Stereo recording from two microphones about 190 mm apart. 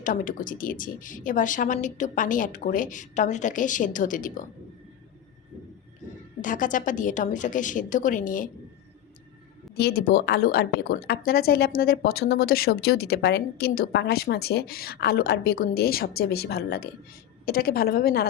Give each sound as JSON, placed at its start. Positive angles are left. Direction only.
{"t": 0.0, "sound": "a woman's voice", "side_deg": 45}
{"t": 6.4, "sound": "a woman's voice", "side_deg": 45}
{"t": 9.7, "sound": "a woman's voice", "side_deg": 55}